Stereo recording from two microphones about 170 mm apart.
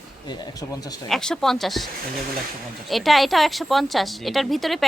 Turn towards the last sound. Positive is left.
turn(degrees=0)  # may be behind; listen again after turning